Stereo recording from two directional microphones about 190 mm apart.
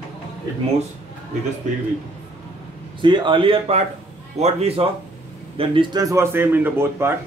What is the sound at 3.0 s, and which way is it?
A man's voice, 25° right (ahead or behind).